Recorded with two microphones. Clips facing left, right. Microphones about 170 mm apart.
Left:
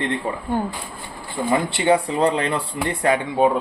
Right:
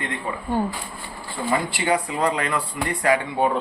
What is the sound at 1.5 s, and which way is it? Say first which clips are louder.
Speech: left 4 dB; 25° left (ahead or behind).